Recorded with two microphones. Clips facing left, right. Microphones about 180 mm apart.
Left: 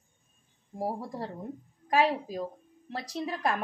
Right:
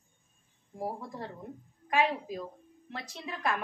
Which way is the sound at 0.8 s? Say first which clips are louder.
Left 4 dB; 35° left (ahead or behind).